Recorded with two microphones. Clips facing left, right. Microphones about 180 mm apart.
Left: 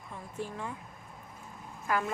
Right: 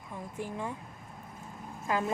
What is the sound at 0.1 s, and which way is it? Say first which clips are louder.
Speech: right 1 dB; 15° right (ahead or behind).